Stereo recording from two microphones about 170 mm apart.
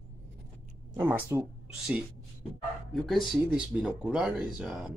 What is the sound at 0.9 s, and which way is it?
Speech, 10° right (ahead or behind).